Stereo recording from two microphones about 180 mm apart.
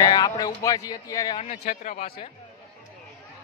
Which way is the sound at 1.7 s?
50° left (ahead or behind).